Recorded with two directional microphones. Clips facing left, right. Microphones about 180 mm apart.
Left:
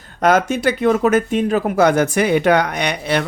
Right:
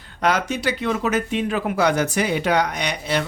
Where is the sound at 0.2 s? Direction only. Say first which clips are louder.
Left 6 dB; 50° left (ahead or behind).